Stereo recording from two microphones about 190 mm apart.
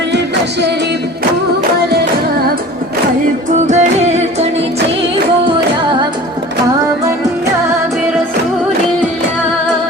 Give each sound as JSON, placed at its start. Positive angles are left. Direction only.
{"t": 3.7, "sound": "music", "side_deg": -35}